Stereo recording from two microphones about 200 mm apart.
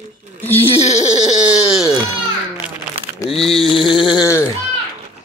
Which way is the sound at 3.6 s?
25° left (ahead or behind).